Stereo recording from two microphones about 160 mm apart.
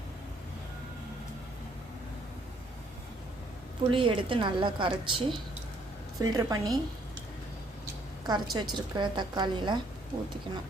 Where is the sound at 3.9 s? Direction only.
30° right (ahead or behind).